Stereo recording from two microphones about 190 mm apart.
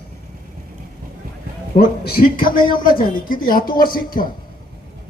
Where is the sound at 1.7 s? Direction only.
55° left (ahead or behind).